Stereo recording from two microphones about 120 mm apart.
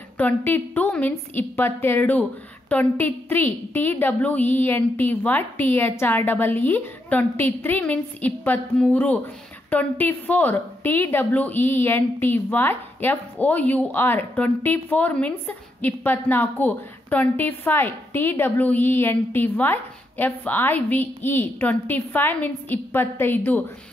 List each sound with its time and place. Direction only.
0.2 s a woman's voice: 20° left (ahead or behind)